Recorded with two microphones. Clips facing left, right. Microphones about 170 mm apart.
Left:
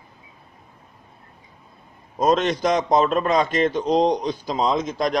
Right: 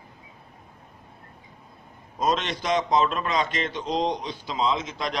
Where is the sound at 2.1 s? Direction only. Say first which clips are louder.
Left 6 dB; 45° left (ahead or behind).